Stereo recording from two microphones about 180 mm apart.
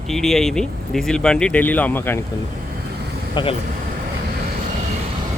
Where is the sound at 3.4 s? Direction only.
25° left (ahead or behind).